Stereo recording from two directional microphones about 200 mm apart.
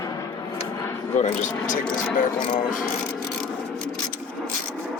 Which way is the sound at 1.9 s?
10° left (ahead or behind).